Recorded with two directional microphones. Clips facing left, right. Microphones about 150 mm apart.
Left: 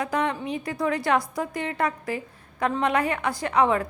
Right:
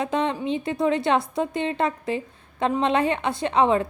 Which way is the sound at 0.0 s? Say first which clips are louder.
Right 2 dB; 25° right (ahead or behind).